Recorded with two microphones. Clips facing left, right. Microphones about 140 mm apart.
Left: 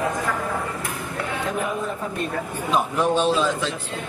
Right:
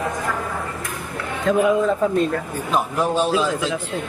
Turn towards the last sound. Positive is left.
turn(degrees=-10)  # may be behind; listen again after turning